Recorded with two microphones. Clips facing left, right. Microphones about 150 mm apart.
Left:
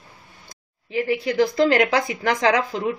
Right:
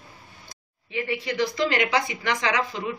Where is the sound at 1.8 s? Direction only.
40° left (ahead or behind).